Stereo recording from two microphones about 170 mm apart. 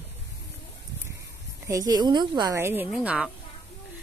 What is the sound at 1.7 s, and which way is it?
Speech, 20° right (ahead or behind).